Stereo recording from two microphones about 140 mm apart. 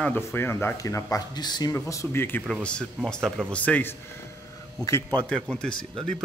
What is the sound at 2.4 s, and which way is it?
A man's voice, 5° left (ahead or behind).